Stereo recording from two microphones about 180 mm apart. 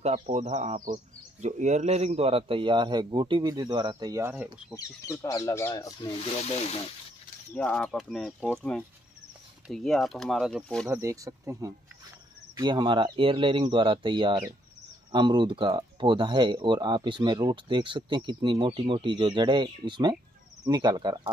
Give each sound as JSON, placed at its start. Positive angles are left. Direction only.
{"t": 0.0, "sound": "speech", "side_deg": -40}
{"t": 4.3, "sound": "speech", "side_deg": -10}
{"t": 4.7, "sound": "speech", "side_deg": 15}
{"t": 6.2, "sound": "speech", "side_deg": 35}
{"t": 7.5, "sound": "speech", "side_deg": 5}
{"t": 9.7, "sound": "speech", "side_deg": 0}
{"t": 10.9, "sound": "speech", "side_deg": -15}